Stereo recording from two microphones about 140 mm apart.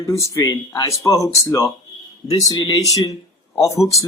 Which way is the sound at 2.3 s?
25° left (ahead or behind).